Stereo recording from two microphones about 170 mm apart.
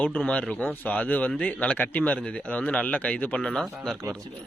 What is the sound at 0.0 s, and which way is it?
Speech, 5° left (ahead or behind).